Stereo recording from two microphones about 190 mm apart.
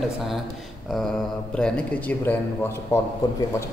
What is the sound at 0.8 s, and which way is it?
Speech, centre (ahead or behind).